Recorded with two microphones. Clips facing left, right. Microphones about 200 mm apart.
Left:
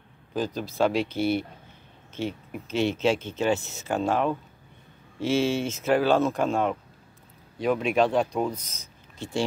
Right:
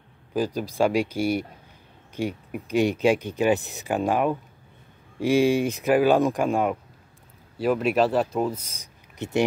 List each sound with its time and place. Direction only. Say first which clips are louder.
0.3 s speech: right 3 dB; 10° right (ahead or behind)
9.2 s speech: right 4 dB; 20° right (ahead or behind)